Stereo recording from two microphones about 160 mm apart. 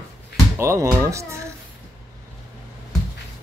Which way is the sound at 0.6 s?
20° right (ahead or behind).